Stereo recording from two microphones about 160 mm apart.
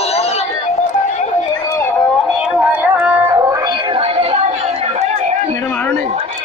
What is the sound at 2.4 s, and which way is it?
Music, 10° right (ahead or behind).